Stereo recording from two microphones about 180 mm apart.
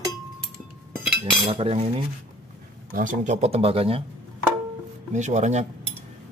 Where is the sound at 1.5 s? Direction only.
35° right (ahead or behind).